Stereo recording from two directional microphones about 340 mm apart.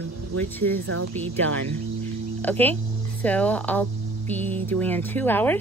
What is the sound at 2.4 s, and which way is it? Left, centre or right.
Hum, centre.